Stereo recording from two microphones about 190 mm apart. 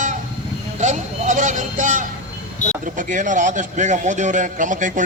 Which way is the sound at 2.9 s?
45° right (ahead or behind).